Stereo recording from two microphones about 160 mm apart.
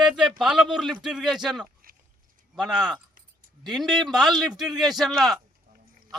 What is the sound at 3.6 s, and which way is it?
A man's voice, centre (ahead or behind).